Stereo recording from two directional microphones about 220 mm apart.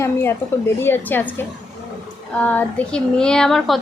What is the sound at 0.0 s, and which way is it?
A woman's voice, 10° left (ahead or behind).